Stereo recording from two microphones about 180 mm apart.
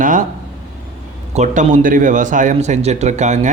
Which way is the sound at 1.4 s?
45° right (ahead or behind).